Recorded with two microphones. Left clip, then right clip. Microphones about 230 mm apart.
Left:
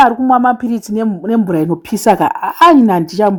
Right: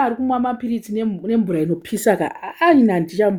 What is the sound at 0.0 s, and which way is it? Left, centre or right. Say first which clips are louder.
Speech: left 10 dB; left.